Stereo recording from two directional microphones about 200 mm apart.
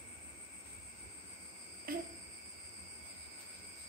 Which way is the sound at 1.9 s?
45° right (ahead or behind).